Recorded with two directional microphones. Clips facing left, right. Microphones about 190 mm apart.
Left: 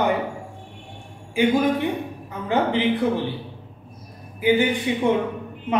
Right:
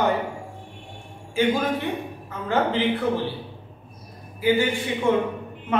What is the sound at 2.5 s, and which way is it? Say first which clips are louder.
Speech: left 2 dB; 15° left (ahead or behind).